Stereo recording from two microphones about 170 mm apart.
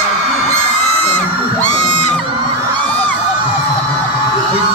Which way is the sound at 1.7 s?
45° left (ahead or behind).